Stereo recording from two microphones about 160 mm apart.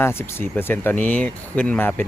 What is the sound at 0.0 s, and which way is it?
Speech, 15° left (ahead or behind).